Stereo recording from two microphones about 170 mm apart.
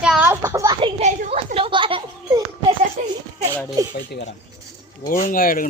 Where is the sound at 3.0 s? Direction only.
45° right (ahead or behind).